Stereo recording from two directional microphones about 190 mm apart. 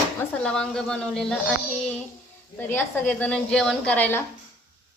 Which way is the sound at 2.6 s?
10° left (ahead or behind).